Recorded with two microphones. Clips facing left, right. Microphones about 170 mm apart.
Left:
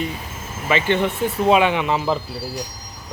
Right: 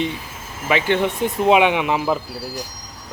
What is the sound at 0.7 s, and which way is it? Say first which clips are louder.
Speech: right 1 dB; 15° right (ahead or behind).